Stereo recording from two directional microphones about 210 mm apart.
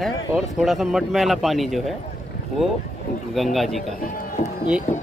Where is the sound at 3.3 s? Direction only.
Centre (ahead or behind).